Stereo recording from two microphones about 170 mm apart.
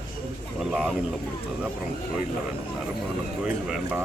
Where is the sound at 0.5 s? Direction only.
5° right (ahead or behind).